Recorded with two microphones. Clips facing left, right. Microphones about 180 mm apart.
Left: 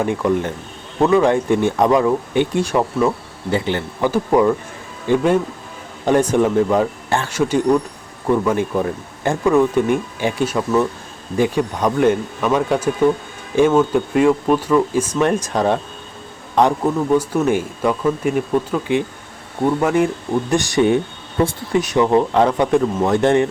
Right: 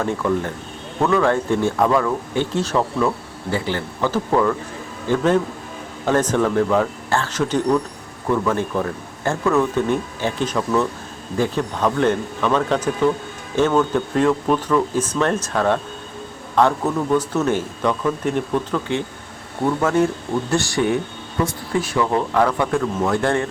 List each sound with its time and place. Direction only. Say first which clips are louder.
0.0 s speech: left 3 dB; 15° left (ahead or behind)